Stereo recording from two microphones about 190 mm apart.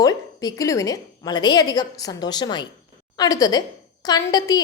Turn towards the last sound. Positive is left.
turn(degrees=20)  # may be behind; listen again after turning